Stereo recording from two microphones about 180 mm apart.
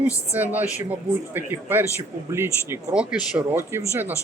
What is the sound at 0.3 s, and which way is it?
A man's voice, 10° right (ahead or behind).